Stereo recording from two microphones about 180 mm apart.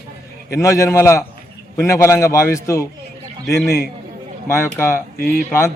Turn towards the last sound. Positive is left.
turn(degrees=15)  # may be behind; listen again after turning